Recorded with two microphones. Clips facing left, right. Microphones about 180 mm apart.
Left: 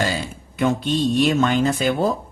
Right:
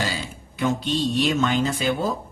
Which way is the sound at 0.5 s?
50° left (ahead or behind).